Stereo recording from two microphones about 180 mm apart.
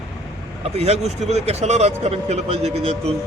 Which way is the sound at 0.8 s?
35° right (ahead or behind).